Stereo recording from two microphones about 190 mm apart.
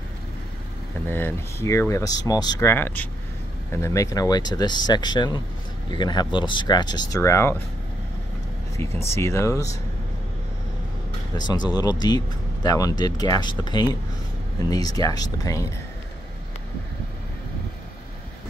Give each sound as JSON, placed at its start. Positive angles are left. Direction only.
{"t": 1.0, "sound": "speech", "side_deg": 10}
{"t": 9.1, "sound": "speech", "side_deg": 15}
{"t": 11.3, "sound": "speech", "side_deg": 20}